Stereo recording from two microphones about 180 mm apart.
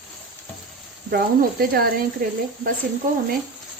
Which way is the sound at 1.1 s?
55° right (ahead or behind).